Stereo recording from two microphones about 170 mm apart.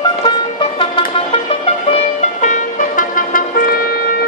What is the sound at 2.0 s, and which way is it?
Music, 45° left (ahead or behind).